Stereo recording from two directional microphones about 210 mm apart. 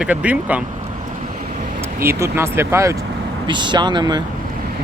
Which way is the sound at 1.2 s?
35° right (ahead or behind).